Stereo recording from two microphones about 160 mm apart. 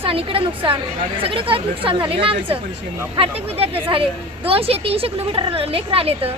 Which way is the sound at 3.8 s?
35° right (ahead or behind).